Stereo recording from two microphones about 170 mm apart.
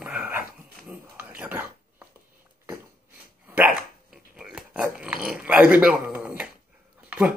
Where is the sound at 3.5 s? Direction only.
5° right (ahead or behind).